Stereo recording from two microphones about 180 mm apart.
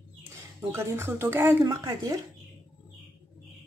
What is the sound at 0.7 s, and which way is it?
A woman's voice, 15° right (ahead or behind).